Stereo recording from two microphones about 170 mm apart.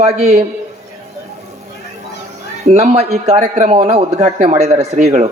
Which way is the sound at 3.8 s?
35° right (ahead or behind).